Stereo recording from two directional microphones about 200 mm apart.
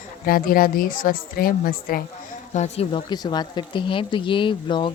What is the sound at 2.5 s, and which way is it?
Speech, 30° left (ahead or behind).